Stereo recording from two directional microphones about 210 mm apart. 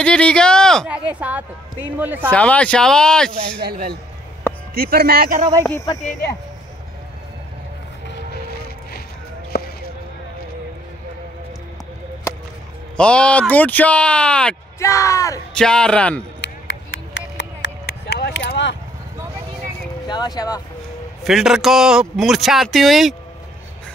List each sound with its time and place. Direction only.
0.0 s speech: 5° left (ahead or behind)
2.3 s speech: 5° left (ahead or behind)
3.6 s speech: 45° right (ahead or behind)
5.6 s speech: 15° left (ahead or behind)
12.9 s speech: 5° left (ahead or behind)
15.5 s speech: 5° left (ahead or behind)
16.3 s a sound: 60° left (ahead or behind)
20.1 s speech: 20° left (ahead or behind)
21.2 s speech: centre (ahead or behind)